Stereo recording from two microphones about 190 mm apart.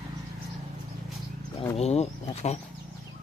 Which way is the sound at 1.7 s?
35° left (ahead or behind).